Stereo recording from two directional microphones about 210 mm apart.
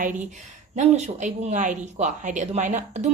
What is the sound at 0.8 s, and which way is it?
Speech, 35° right (ahead or behind).